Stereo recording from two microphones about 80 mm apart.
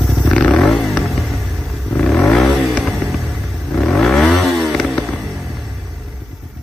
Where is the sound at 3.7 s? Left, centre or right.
Centre.